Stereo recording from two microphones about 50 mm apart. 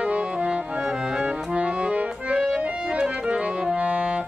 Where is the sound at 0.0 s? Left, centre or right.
Right.